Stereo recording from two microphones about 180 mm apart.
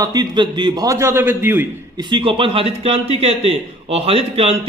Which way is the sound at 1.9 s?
25° right (ahead or behind).